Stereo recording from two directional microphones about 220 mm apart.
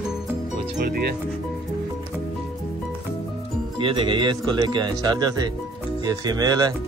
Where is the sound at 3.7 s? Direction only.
20° right (ahead or behind).